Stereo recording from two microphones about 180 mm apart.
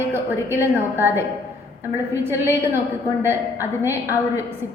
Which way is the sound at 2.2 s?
15° right (ahead or behind).